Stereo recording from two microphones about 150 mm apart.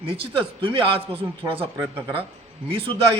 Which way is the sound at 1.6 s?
15° right (ahead or behind).